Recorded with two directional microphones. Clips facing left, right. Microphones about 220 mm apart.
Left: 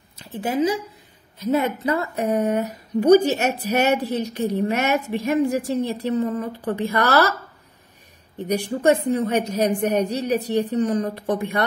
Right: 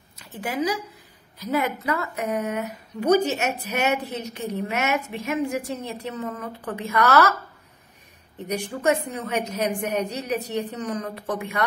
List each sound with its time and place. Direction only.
0.2 s speech: 25° left (ahead or behind)
8.5 s speech: 35° left (ahead or behind)